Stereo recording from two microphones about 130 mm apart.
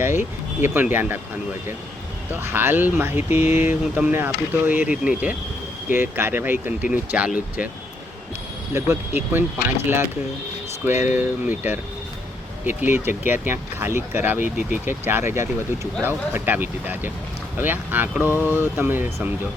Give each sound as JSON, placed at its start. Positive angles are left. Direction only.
{"t": 0.0, "sound": "speech", "side_deg": -15}
{"t": 2.3, "sound": "speech", "side_deg": -15}
{"t": 8.7, "sound": "speech", "side_deg": -20}
{"t": 10.8, "sound": "speech", "side_deg": -15}